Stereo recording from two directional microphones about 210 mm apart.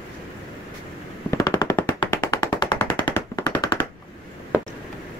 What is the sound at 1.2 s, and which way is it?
Machine gun, 20° left (ahead or behind).